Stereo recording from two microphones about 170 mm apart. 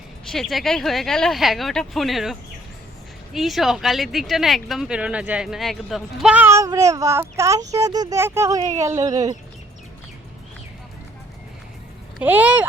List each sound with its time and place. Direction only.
0.3 s speech: centre (ahead or behind); by 9.4 s 20° right (ahead or behind)
12.2 s speech: 10° right (ahead or behind)